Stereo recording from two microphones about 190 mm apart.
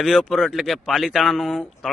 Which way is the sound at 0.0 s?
Centre (ahead or behind).